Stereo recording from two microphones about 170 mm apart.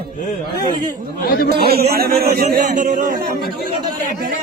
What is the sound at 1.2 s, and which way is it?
Speech, 60° left (ahead or behind).